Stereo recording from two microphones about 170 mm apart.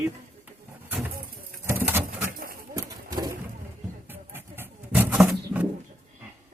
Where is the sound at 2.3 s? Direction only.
60° right (ahead or behind).